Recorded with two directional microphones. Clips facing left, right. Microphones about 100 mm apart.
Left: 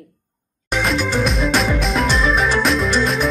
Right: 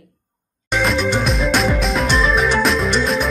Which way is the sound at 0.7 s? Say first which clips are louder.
Right 2 dB; centre (ahead or behind).